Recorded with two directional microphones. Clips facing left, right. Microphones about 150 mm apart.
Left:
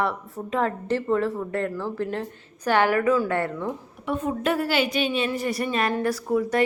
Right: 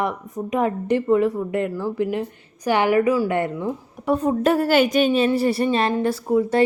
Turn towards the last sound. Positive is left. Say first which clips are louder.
# right 4 dB
turn(degrees=-25)  # may be behind; listen again after turning